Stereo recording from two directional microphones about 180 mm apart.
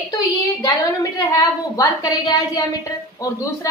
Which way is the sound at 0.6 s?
20° left (ahead or behind).